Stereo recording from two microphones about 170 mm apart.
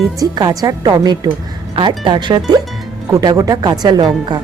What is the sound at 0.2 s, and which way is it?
Speech, 25° right (ahead or behind).